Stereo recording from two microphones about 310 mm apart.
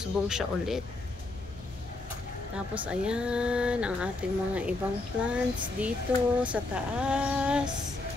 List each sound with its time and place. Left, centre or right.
0.0 s speech: centre
2.5 s speech: centre